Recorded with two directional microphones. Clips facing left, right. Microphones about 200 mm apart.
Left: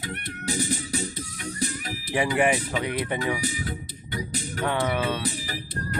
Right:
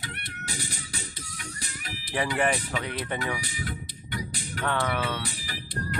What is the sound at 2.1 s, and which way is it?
Speech, 15° left (ahead or behind).